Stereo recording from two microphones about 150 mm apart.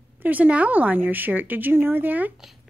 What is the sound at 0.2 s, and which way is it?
A woman's voice, 10° right (ahead or behind).